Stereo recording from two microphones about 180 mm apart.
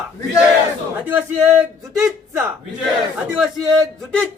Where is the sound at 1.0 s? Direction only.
10° right (ahead or behind).